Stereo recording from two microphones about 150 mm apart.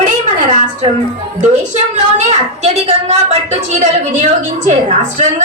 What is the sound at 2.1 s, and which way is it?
A woman's voice, 50° right (ahead or behind).